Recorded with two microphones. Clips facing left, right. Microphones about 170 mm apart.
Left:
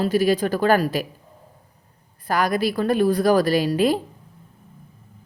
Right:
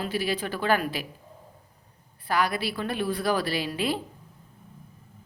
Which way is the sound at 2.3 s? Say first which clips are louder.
Left 5 dB; 45° left (ahead or behind).